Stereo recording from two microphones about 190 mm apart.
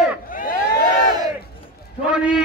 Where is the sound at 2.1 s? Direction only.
5° right (ahead or behind).